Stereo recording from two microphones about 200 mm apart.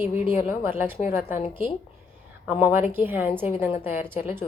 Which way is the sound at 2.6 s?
10° right (ahead or behind).